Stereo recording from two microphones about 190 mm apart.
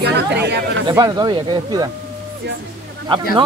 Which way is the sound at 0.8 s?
20° right (ahead or behind).